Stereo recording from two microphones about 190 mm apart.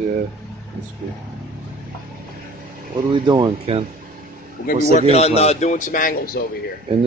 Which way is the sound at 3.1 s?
25° right (ahead or behind).